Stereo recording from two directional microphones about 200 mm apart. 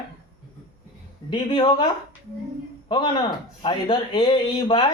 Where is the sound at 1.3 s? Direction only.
25° left (ahead or behind).